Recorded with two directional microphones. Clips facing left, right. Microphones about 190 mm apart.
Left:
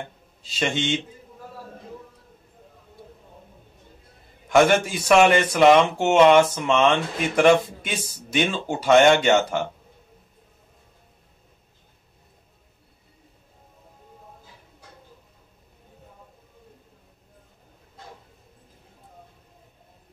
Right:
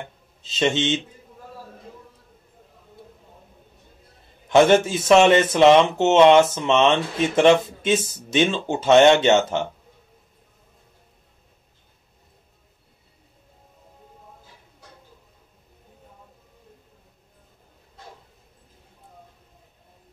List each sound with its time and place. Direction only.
0.4 s speech: 25° right (ahead or behind)
4.5 s speech: 25° right (ahead or behind)